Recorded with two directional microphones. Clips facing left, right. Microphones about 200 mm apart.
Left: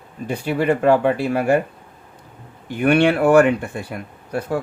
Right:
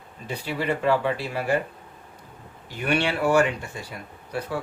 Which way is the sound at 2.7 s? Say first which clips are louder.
Left 9 dB; 55° left (ahead or behind).